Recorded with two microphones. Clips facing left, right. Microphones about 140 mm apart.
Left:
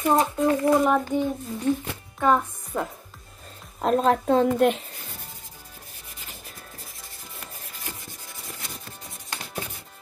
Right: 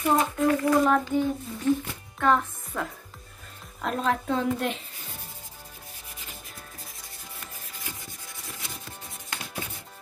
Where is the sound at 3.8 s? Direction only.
35° left (ahead or behind); by 5.3 s 50° left (ahead or behind).